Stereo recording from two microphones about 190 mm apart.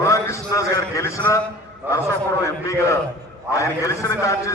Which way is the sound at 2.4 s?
15° left (ahead or behind).